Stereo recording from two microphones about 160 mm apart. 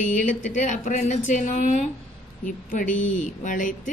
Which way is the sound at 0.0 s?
55° left (ahead or behind).